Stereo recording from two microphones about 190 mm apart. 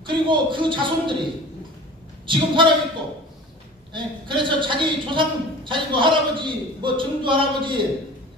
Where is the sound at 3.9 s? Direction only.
25° right (ahead or behind).